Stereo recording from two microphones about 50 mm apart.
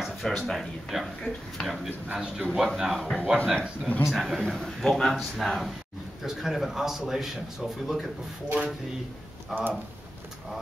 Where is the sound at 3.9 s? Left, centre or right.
Left.